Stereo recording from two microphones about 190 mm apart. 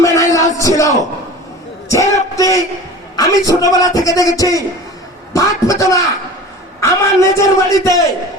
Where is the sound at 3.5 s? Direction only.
20° left (ahead or behind).